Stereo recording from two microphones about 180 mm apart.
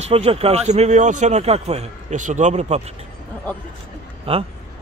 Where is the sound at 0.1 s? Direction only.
35° right (ahead or behind).